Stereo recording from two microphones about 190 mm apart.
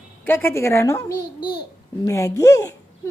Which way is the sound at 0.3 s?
10° left (ahead or behind).